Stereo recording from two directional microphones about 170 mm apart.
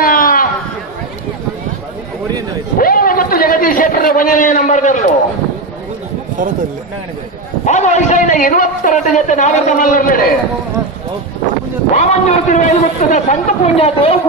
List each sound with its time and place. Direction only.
0.0 s chatter: 55° left (ahead or behind)
2.8 s a sound: 60° left (ahead or behind)
7.6 s a man's voice: 45° left (ahead or behind)
11.9 s a man's voice: 45° left (ahead or behind)